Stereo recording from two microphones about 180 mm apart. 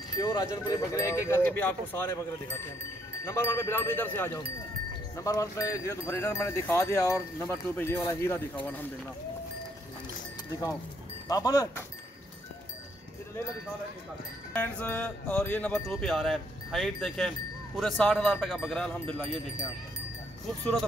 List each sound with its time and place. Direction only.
0.2 s speech: 20° left (ahead or behind)
3.3 s speech: 15° left (ahead or behind)
11.2 s speech: 20° left (ahead or behind)
14.5 s speech: 10° left (ahead or behind)
15.9 s speech: centre (ahead or behind)